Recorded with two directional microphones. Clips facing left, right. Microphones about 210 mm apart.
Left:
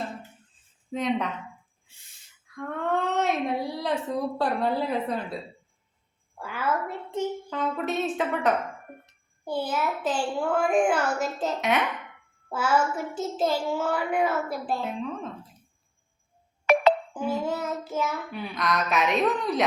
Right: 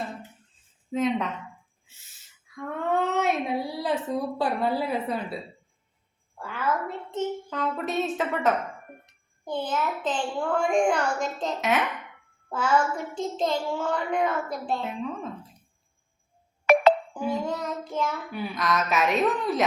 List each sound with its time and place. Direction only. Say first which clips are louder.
0.9 s a woman's voice: right 2 dB; centre (ahead or behind)
2.6 s speech: right 1 dB; centre (ahead or behind)
6.4 s a child's voice: even; 5° left (ahead or behind)
16.7 s music: right 2 dB; 50° right (ahead or behind)
17.2 s child singing: even; 5° left (ahead or behind)